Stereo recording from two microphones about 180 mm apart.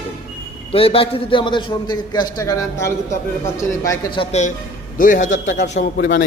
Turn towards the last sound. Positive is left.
turn(degrees=75)  # may be behind; listen again after turning